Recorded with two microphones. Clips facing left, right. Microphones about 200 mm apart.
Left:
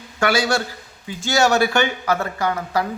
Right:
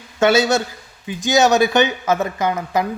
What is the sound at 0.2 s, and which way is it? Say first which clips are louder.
Speech: right 4 dB; 25° right (ahead or behind).